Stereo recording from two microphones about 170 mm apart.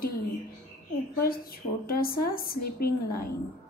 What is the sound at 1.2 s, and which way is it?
A woman's voice, 60° left (ahead or behind).